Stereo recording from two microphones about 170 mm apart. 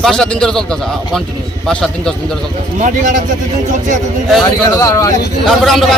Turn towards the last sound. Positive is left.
turn(degrees=0)  # may be behind; listen again after turning